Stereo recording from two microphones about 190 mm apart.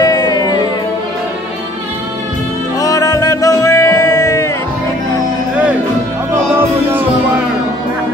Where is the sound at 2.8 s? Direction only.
20° left (ahead or behind).